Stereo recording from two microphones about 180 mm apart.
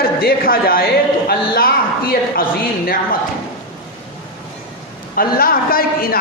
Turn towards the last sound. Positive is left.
turn(degrees=55)  # may be behind; listen again after turning